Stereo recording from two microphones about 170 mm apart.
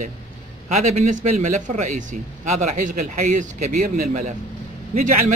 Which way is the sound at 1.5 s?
45° right (ahead or behind).